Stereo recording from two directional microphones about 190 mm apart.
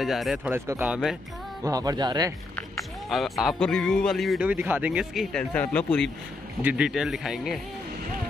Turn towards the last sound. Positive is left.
turn(degrees=0)  # may be behind; listen again after turning